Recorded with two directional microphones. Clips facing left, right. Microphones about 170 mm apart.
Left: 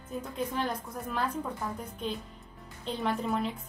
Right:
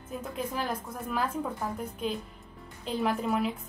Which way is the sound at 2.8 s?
5° right (ahead or behind).